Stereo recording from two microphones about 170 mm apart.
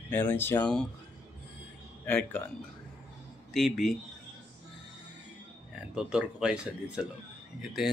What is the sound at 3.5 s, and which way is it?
Speech, centre (ahead or behind).